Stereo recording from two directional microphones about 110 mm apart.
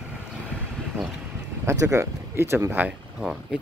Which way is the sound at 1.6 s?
25° right (ahead or behind).